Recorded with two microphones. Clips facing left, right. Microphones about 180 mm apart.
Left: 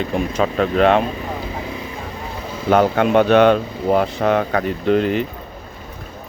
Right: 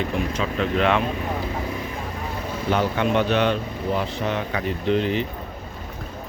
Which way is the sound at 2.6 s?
50° left (ahead or behind).